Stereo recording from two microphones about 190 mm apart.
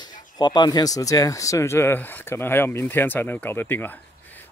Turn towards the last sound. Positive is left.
turn(degrees=10)  # may be behind; listen again after turning